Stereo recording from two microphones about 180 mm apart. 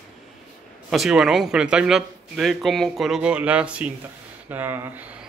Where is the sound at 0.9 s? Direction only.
Centre (ahead or behind).